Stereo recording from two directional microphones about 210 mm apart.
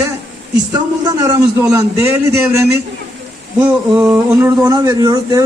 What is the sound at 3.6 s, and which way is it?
Speech, 15° right (ahead or behind).